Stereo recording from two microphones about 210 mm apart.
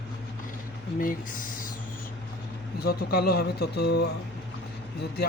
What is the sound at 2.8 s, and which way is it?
Speech, 45° left (ahead or behind).